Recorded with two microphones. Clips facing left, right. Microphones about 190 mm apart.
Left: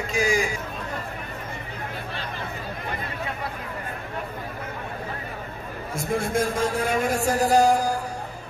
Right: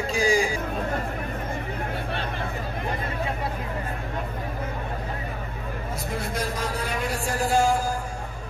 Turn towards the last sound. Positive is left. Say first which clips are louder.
# left 4 dB
turn(degrees=40)  # may be behind; listen again after turning